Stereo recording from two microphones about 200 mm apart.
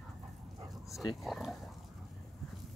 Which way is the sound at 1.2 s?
Centre (ahead or behind).